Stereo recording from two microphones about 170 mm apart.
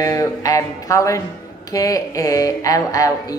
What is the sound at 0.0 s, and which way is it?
Speech, 20° left (ahead or behind).